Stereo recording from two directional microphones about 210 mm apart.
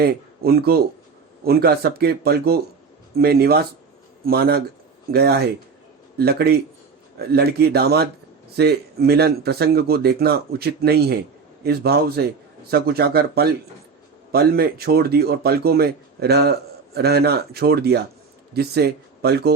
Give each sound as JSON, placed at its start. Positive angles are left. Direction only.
{"t": 0.0, "sound": "speech", "side_deg": -45}